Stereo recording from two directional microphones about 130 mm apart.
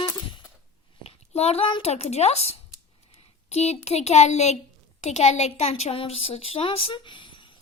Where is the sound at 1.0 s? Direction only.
55° left (ahead or behind).